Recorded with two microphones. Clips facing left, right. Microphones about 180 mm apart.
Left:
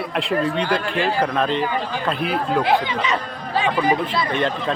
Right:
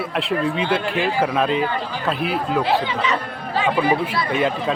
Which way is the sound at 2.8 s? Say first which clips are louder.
Even; 15° left (ahead or behind).